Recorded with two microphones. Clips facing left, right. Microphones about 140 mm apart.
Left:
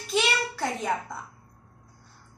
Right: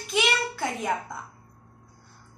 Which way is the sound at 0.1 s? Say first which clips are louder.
Even; centre (ahead or behind).